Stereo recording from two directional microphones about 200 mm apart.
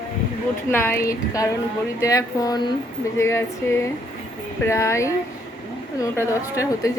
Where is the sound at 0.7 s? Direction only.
10° left (ahead or behind).